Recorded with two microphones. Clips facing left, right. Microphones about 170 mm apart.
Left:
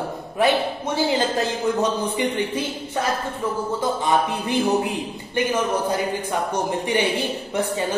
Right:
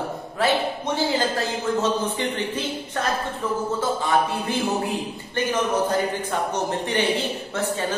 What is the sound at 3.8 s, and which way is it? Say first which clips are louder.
Speech: left 2 dB; 20° left (ahead or behind).